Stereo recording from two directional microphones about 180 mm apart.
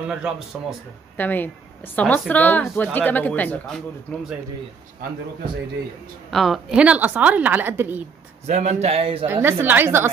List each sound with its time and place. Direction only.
0.1 s speech: 5° right (ahead or behind)
1.1 s a woman's voice: 10° left (ahead or behind)
6.3 s a woman's voice: centre (ahead or behind)
8.5 s a man's voice: 40° right (ahead or behind)
9.2 s a woman's voice: 15° right (ahead or behind)